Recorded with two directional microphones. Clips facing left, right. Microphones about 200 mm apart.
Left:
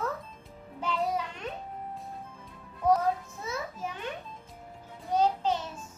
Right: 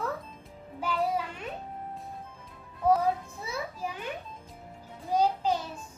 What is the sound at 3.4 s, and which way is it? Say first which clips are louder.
Children playing: even; 10° right (ahead or behind).